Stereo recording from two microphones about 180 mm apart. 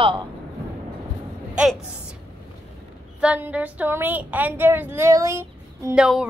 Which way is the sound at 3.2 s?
5° right (ahead or behind).